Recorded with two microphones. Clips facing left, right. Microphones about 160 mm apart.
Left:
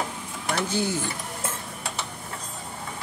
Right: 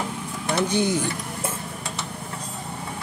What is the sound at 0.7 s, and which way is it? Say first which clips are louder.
Speech: right 4 dB; 15° right (ahead or behind).